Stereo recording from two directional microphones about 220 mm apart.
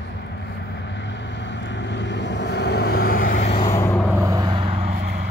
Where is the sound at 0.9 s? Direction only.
55° left (ahead or behind); by 3.6 s 30° left (ahead or behind).